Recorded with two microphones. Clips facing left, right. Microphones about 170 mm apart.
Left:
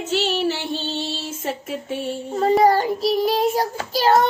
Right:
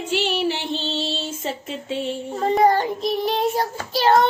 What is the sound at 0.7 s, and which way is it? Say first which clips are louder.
Music: even; 25° right (ahead or behind).